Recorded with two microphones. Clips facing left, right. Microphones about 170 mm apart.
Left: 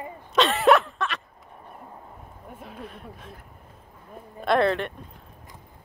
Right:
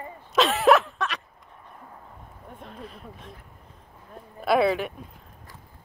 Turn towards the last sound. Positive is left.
turn(degrees=-5)  # may be behind; listen again after turning